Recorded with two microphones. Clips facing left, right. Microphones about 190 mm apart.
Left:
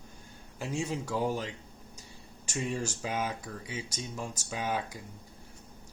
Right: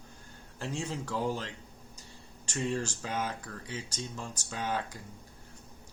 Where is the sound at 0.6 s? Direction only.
10° left (ahead or behind).